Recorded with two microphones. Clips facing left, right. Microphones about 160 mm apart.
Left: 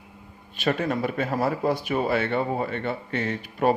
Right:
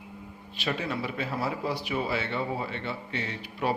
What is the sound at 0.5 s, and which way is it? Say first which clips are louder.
A man's voice: left 6 dB; 50° left (ahead or behind).